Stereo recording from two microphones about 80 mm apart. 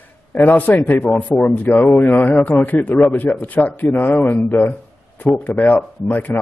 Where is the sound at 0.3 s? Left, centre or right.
Left.